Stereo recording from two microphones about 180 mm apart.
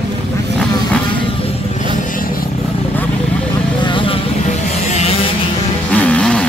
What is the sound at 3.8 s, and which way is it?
Vehicle, 30° left (ahead or behind).